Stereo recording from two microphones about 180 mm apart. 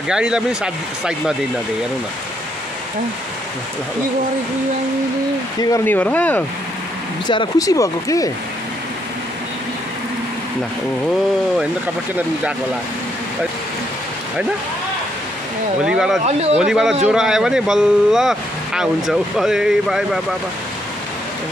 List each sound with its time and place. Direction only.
0.1 s speech: 5° right (ahead or behind)
5.6 s speech: 15° left (ahead or behind)
7.2 s speech: 20° left (ahead or behind)
15.8 s speech: 5° right (ahead or behind)
16.3 s speech: 35° right (ahead or behind)
16.5 s speech: 5° right (ahead or behind)